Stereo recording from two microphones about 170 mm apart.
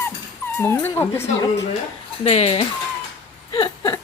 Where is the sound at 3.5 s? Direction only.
25° left (ahead or behind).